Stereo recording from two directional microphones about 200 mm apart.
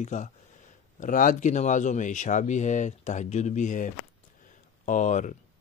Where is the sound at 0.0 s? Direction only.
35° left (ahead or behind).